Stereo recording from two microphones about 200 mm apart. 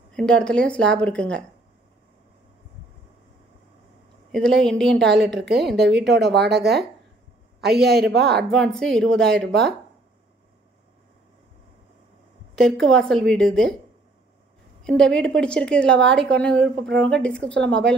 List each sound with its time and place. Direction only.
0.1 s a woman's voice: 5° left (ahead or behind)
4.3 s a woman's voice: 5° left (ahead or behind)
5.5 s speech: 55° right (ahead or behind)
8.5 s a woman's voice: 5° left (ahead or behind)
12.5 s a woman's voice: 5° left (ahead or behind)
14.8 s a woman's voice: 5° left (ahead or behind)